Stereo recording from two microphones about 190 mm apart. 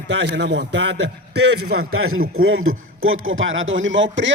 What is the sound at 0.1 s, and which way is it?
A man's voice, 70° right (ahead or behind).